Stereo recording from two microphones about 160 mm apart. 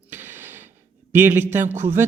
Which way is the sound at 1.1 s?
15° right (ahead or behind).